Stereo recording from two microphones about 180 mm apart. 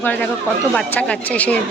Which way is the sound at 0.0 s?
10° left (ahead or behind).